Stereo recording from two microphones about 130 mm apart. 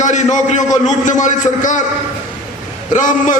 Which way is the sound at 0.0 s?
70° left (ahead or behind).